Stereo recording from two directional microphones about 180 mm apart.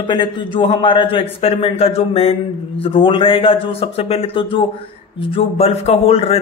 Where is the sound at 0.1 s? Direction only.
25° left (ahead or behind).